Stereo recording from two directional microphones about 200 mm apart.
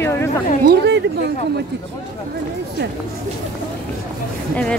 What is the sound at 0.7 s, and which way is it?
Speech, 60° right (ahead or behind).